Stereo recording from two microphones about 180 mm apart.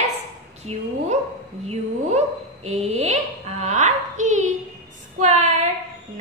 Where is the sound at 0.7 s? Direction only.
35° right (ahead or behind).